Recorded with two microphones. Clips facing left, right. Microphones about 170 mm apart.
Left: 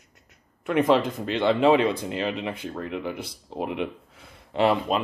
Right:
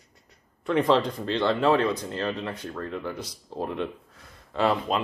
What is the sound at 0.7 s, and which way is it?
Speech, 5° left (ahead or behind).